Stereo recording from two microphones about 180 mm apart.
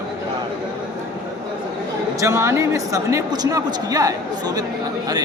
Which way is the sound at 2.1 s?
15° right (ahead or behind).